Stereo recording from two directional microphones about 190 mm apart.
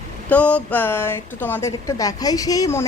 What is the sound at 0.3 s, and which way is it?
Speech, 5° left (ahead or behind).